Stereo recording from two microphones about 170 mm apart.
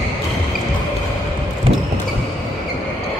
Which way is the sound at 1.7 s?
30° right (ahead or behind).